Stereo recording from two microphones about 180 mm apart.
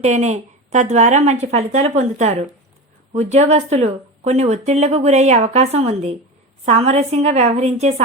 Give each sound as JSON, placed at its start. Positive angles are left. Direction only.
{"t": 0.0, "sound": "speech", "side_deg": -40}